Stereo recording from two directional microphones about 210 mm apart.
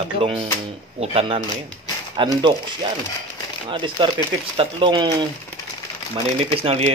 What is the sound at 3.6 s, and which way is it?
Speech, 25° right (ahead or behind).